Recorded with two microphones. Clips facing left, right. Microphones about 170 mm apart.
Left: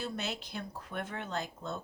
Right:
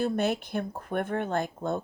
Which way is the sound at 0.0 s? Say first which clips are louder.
Right 11 dB; 55° right (ahead or behind).